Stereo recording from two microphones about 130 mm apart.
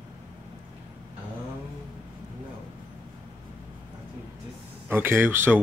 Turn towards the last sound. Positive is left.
turn(degrees=-15)  # may be behind; listen again after turning